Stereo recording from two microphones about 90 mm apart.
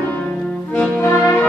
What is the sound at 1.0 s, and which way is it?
Music, 25° left (ahead or behind).